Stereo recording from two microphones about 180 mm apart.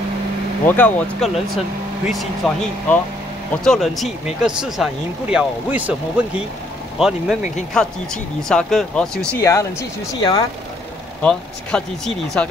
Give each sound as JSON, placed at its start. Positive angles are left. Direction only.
{"t": 0.7, "sound": "speech", "side_deg": 10}
{"t": 9.4, "sound": "speech", "side_deg": 15}
{"t": 11.7, "sound": "speech", "side_deg": 5}